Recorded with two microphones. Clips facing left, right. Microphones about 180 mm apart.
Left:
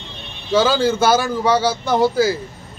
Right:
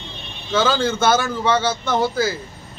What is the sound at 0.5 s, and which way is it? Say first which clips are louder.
Speech: left 3 dB; 10° left (ahead or behind).